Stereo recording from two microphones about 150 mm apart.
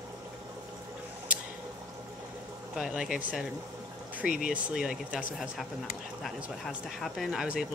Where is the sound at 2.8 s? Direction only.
5° right (ahead or behind).